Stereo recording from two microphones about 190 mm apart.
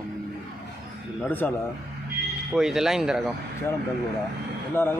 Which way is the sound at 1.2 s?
10° left (ahead or behind).